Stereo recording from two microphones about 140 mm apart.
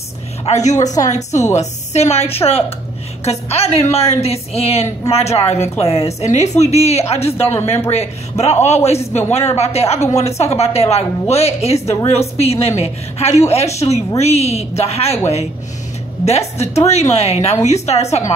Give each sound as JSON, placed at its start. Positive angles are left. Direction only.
{"t": 0.5, "sound": "a woman's voice", "side_deg": 55}
{"t": 0.7, "sound": "a woman's voice", "side_deg": 25}
{"t": 1.1, "sound": "a woman's voice", "side_deg": 55}
{"t": 16.3, "sound": "a woman's voice", "side_deg": 50}